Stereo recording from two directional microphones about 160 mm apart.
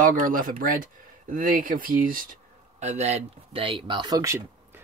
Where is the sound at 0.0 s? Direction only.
60° right (ahead or behind).